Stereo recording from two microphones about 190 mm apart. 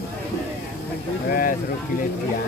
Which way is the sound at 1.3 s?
45° left (ahead or behind).